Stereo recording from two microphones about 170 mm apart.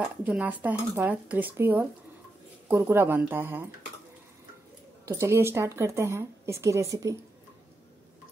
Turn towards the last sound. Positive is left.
turn(degrees=-20)  # may be behind; listen again after turning